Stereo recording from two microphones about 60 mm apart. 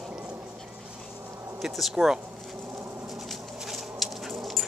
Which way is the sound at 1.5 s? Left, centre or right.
Centre.